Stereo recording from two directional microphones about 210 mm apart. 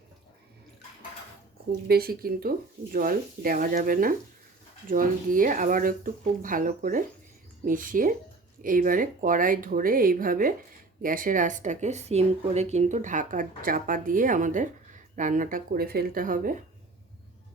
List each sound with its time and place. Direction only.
1.9 s speech: 45° right (ahead or behind)